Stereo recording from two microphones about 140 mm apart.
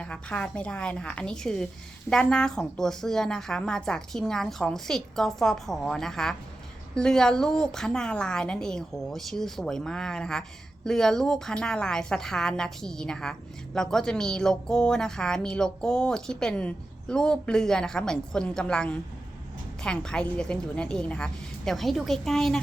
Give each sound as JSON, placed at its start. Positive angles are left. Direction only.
{"t": 0.0, "sound": "a woman's voice", "side_deg": 10}